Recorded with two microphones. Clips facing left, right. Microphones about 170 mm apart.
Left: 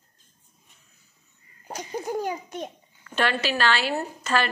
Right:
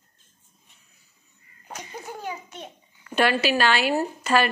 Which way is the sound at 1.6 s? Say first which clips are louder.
Left 6 dB; 35° left (ahead or behind).